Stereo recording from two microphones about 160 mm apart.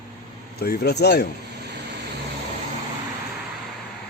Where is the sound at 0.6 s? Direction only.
90° left.